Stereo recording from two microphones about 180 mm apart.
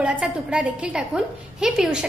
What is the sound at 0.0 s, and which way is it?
A woman's voice, 5° right (ahead or behind).